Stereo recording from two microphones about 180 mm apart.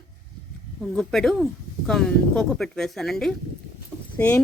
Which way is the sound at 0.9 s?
Centre (ahead or behind).